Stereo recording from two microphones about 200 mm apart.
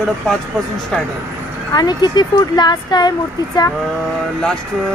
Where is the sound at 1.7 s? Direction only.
20° left (ahead or behind).